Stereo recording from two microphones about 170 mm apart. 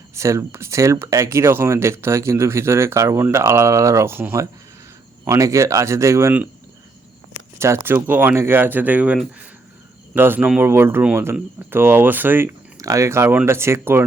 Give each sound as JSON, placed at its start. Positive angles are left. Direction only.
{"t": 0.1, "sound": "speech", "side_deg": -15}
{"t": 7.6, "sound": "speech", "side_deg": -15}